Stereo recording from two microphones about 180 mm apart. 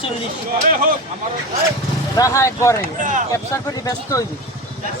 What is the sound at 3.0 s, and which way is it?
Speech, 45° right (ahead or behind).